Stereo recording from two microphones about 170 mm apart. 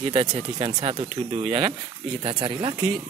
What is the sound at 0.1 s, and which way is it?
Speech, 35° right (ahead or behind).